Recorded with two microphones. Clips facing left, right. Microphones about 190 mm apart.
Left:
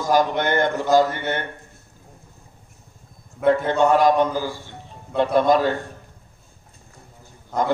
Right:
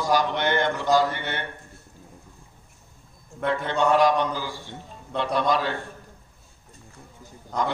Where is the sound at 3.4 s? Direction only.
45° left (ahead or behind).